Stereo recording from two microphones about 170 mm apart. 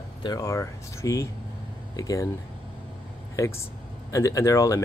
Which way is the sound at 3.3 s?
15° left (ahead or behind).